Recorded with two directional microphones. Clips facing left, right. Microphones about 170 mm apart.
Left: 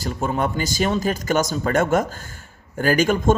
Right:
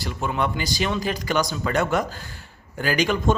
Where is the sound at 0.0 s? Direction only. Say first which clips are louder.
Left 2 dB; 40° left (ahead or behind).